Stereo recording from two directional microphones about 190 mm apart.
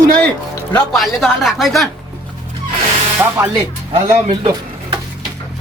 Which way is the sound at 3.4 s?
20° right (ahead or behind).